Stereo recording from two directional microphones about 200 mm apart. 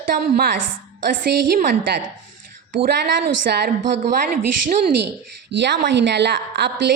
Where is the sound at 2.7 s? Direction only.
45° right (ahead or behind).